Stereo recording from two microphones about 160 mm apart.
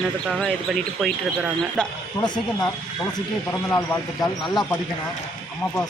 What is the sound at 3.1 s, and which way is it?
Speech, 15° left (ahead or behind).